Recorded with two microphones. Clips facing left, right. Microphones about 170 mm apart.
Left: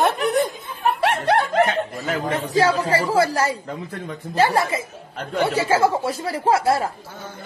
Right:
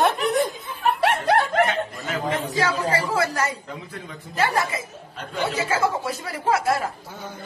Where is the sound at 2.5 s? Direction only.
30° left (ahead or behind).